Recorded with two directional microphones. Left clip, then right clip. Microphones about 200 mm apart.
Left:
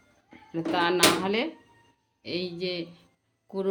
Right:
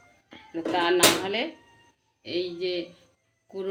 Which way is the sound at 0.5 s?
65° left (ahead or behind).